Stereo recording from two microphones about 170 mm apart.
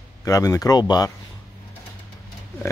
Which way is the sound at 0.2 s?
20° left (ahead or behind).